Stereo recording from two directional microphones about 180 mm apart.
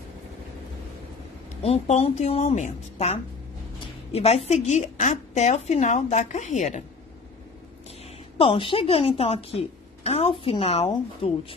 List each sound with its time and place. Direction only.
1.6 s a woman's voice: 35° left (ahead or behind)
3.8 s a sound: 35° left (ahead or behind)
4.5 s a woman's voice: 40° left (ahead or behind)
8.4 s a woman's voice: 30° left (ahead or behind)